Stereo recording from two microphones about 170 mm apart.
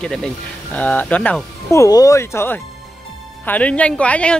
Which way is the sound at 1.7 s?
20° left (ahead or behind).